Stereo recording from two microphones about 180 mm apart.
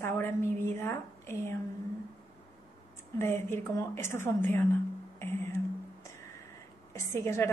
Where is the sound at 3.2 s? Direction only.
15° left (ahead or behind).